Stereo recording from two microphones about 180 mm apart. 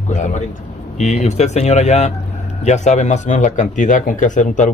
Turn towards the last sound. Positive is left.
turn(degrees=45)  # may be behind; listen again after turning